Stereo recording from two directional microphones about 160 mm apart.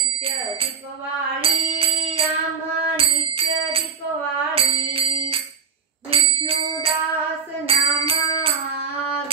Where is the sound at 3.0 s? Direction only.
35° right (ahead or behind).